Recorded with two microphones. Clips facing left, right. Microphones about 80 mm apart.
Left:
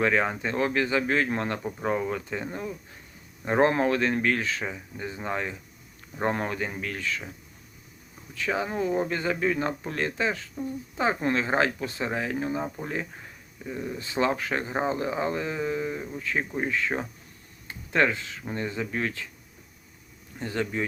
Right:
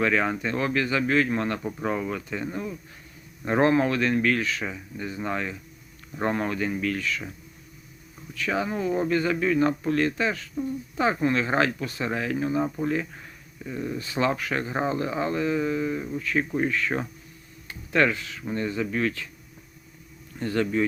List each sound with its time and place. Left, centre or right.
0.0 s speech: left
8.4 s speech: left
13.7 s speech: centre
14.0 s speech: left
20.4 s speech: left